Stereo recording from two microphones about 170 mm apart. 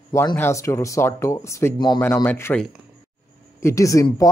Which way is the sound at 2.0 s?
10° left (ahead or behind).